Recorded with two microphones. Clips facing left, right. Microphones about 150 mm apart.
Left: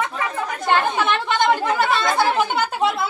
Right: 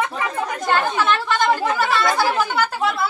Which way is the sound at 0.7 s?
20° left (ahead or behind).